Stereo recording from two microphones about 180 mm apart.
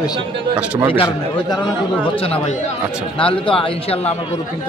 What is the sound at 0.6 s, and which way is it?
Speech, 10° right (ahead or behind).